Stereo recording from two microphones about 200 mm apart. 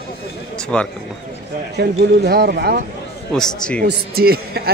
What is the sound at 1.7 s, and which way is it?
A man's voice, 55° right (ahead or behind).